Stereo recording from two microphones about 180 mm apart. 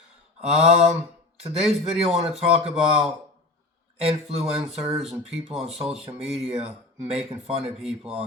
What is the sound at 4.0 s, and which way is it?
Speech, 35° right (ahead or behind).